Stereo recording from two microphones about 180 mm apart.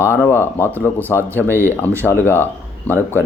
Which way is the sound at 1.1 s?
15° right (ahead or behind).